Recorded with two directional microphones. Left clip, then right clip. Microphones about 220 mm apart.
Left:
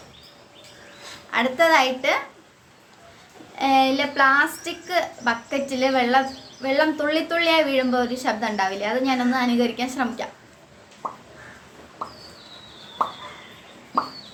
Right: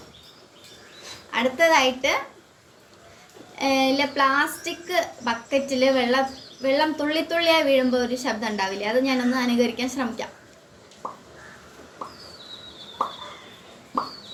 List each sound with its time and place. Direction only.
1.3 s a woman's voice: 15° left (ahead or behind)
3.6 s a woman's voice: 10° left (ahead or behind)
11.0 s a sound: 15° left (ahead or behind)